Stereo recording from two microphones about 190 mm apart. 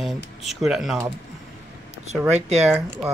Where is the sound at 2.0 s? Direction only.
35° right (ahead or behind).